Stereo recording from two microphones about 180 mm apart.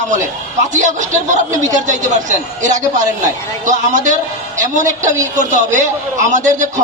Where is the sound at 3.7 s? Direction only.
45° right (ahead or behind).